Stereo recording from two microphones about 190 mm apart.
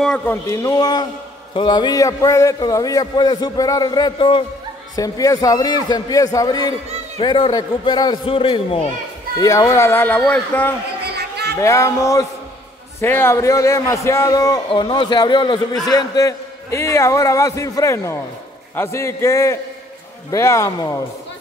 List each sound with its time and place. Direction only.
0.0 s a man's voice: 5° left (ahead or behind); by 8.8 s 30° left (ahead or behind)
9.4 s a man's voice: 15° left (ahead or behind)
11.1 s a sound: 60° right (ahead or behind)
11.5 s a man's voice: 15° left (ahead or behind)